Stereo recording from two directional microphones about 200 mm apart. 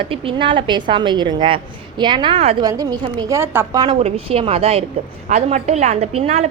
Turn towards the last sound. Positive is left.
turn(degrees=-30)  # may be behind; listen again after turning